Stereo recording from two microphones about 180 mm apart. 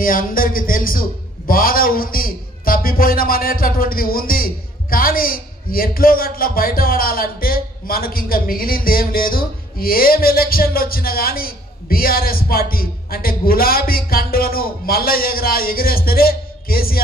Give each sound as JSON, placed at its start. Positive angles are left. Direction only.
{"t": 0.0, "sound": "a man's voice", "side_deg": 50}